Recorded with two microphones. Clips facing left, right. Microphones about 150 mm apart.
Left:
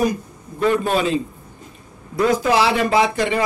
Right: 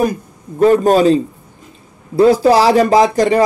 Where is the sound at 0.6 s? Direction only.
40° right (ahead or behind).